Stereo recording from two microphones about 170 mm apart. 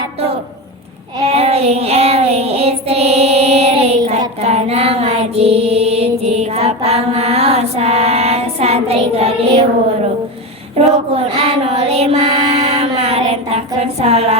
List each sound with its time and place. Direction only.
1.2 s child singing: 35° right (ahead or behind)
4.4 s mantra: 40° right (ahead or behind)
10.8 s child singing: 40° right (ahead or behind)